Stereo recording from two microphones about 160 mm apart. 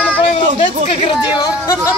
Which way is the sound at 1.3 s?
25° left (ahead or behind).